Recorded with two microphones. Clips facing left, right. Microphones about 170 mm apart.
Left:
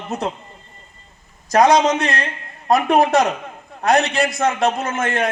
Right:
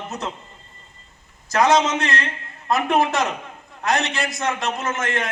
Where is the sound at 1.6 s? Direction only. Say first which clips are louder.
Left 4 dB; 40° left (ahead or behind).